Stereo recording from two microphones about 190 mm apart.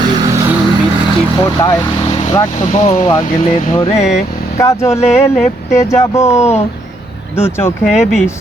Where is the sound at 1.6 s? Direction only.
15° left (ahead or behind).